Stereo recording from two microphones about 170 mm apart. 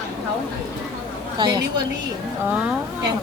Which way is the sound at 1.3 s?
25° right (ahead or behind).